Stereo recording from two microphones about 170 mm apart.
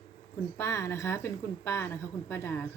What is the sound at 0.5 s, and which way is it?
A woman's voice, 15° left (ahead or behind).